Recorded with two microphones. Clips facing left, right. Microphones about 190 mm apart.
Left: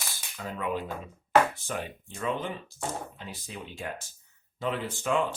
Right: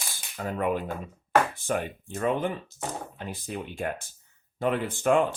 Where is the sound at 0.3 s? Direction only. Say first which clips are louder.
Right 5 dB; 55° right (ahead or behind).